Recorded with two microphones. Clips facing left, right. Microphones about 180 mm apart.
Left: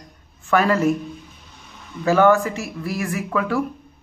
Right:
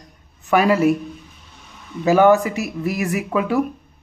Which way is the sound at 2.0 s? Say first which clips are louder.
Right 2 dB; 15° right (ahead or behind).